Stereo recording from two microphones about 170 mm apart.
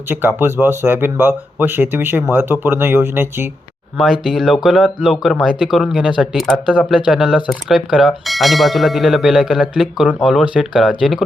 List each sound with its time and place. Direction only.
0.1 s speech: 10° right (ahead or behind)
3.9 s speech: centre (ahead or behind)